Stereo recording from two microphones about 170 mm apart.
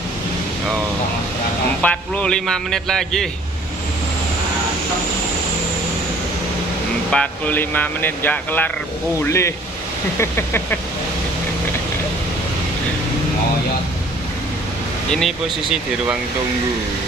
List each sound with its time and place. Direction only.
1.8 s a man's voice: 10° left (ahead or behind)
7.1 s speech: 10° left (ahead or behind)
15.0 s a man's voice: centre (ahead or behind)